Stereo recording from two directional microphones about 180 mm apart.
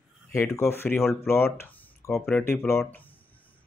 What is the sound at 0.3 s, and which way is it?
Speech, 15° left (ahead or behind).